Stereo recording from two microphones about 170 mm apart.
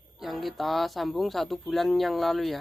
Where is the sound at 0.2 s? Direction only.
Centre (ahead or behind).